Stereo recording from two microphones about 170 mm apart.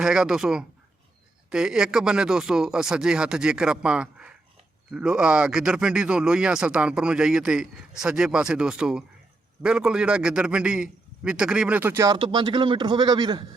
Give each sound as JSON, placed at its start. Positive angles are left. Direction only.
{"t": 0.0, "sound": "a man's voice", "side_deg": -5}